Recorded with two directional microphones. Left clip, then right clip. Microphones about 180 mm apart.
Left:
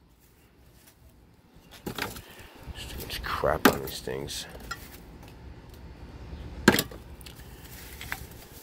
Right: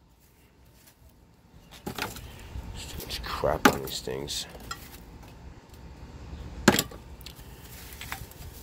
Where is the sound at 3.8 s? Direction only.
15° right (ahead or behind).